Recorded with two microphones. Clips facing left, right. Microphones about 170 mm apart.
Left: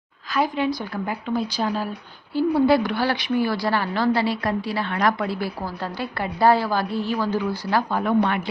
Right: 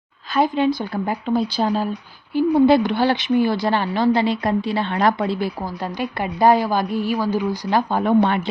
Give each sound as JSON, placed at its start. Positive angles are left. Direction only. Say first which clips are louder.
{"t": 0.3, "sound": "a woman's voice", "louder": "right 4 dB", "side_deg": -25}